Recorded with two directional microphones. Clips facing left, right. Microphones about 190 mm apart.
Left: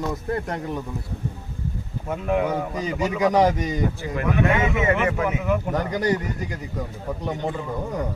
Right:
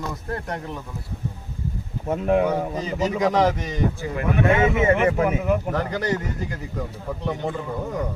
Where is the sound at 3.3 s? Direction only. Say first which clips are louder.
Left 1 dB; 10° left (ahead or behind).